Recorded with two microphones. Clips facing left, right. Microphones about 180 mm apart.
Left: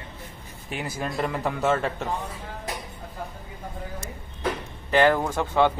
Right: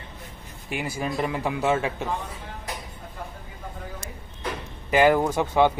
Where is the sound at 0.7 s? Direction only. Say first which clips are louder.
Right 2 dB; 5° right (ahead or behind).